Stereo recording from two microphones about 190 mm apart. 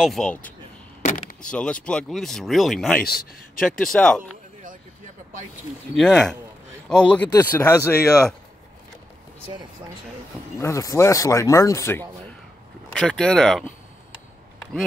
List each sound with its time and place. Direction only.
0.0 s speech: centre (ahead or behind)
1.0 s vehicle: 40° left (ahead or behind)
1.4 s speech: 5° left (ahead or behind)
3.0 s speech: 50° left (ahead or behind)
3.8 s speech: 5° left (ahead or behind)
5.9 s speech: centre (ahead or behind)
7.2 s speech: 20° left (ahead or behind)
10.6 s speech: 15° left (ahead or behind)
12.9 s speech: centre (ahead or behind)